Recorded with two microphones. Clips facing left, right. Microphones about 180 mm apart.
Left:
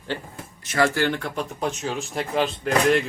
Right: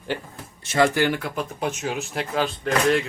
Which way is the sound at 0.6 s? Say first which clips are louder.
Right 2 dB; 25° right (ahead or behind).